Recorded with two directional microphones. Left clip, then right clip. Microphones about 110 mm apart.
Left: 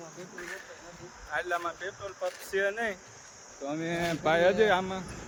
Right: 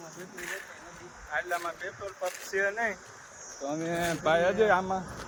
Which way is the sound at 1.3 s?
60° left (ahead or behind).